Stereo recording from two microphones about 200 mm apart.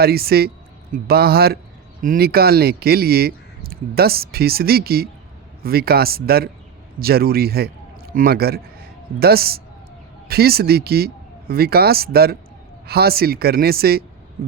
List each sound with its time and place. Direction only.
0.0 s a man's voice: 50° right (ahead or behind)